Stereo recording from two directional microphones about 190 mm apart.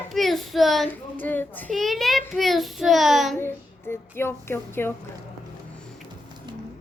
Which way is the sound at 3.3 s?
10° left (ahead or behind).